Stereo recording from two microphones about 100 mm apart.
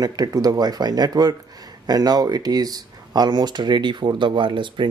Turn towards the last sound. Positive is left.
turn(degrees=-55)  # may be behind; listen again after turning